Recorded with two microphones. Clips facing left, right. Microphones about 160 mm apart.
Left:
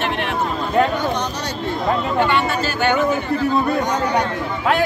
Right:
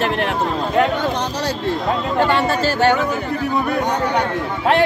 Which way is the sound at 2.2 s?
35° right (ahead or behind).